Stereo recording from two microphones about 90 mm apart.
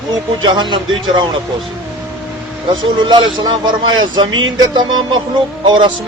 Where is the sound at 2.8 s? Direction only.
65° right (ahead or behind).